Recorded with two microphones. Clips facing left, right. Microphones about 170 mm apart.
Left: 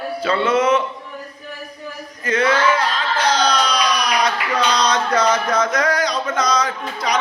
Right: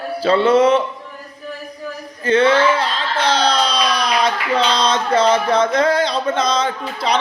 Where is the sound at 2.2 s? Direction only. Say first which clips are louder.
Right 4 dB; 30° right (ahead or behind).